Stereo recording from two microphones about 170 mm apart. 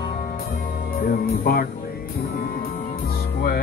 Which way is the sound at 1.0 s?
60° left (ahead or behind).